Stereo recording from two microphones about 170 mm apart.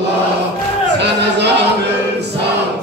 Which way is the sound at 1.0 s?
85° right.